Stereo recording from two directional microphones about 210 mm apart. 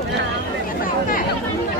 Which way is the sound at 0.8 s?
40° left (ahead or behind).